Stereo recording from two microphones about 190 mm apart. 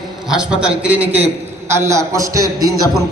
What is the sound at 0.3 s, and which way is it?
A man's voice, 5° right (ahead or behind).